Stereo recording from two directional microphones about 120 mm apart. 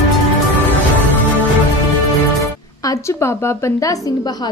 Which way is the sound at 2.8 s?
25° left (ahead or behind).